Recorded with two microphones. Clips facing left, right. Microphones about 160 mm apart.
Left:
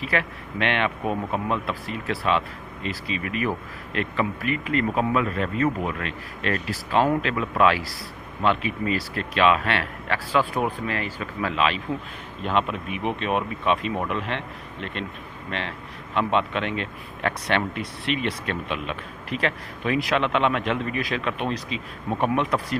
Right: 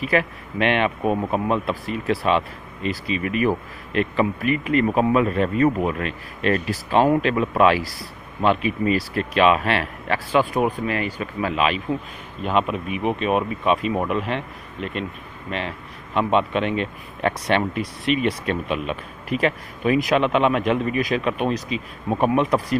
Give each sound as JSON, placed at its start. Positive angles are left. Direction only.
{"t": 0.0, "sound": "speech", "side_deg": -15}
{"t": 16.2, "sound": "speech", "side_deg": -15}